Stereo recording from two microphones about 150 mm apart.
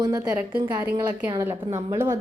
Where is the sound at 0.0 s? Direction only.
25° right (ahead or behind).